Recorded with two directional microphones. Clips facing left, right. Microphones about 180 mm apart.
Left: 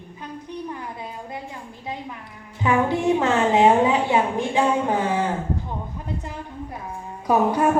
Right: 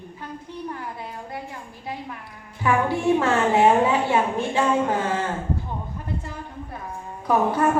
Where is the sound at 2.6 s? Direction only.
20° left (ahead or behind).